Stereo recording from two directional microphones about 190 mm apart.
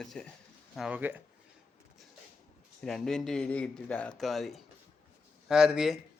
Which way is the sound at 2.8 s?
5° left (ahead or behind).